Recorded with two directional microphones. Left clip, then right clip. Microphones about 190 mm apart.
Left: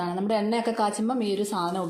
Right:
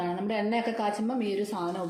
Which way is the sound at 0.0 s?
35° left (ahead or behind).